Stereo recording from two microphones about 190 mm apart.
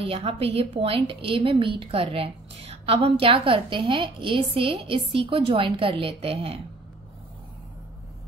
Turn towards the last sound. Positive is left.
turn(degrees=-30)  # may be behind; listen again after turning